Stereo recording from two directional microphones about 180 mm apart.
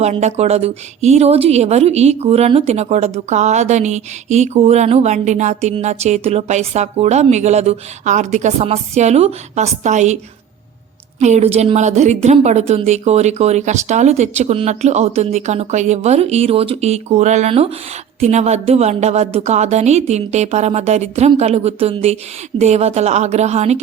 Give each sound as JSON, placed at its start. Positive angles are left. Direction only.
{"t": 0.0, "sound": "a woman's voice", "side_deg": -40}
{"t": 11.2, "sound": "a woman's voice", "side_deg": -40}